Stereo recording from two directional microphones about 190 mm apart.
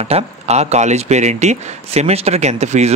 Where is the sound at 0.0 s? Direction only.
35° right (ahead or behind).